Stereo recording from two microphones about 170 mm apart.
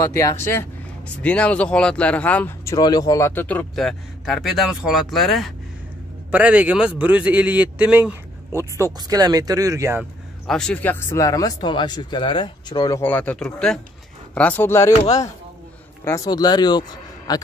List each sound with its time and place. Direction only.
0.0 s a man's voice: 20° left (ahead or behind); by 10.0 s 15° right (ahead or behind)
10.4 s speech: 5° left (ahead or behind); by 13.0 s 25° left (ahead or behind)
13.0 s speech: 10° left (ahead or behind)